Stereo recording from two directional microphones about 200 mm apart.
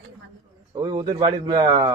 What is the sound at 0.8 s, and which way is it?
A man's voice, 20° right (ahead or behind).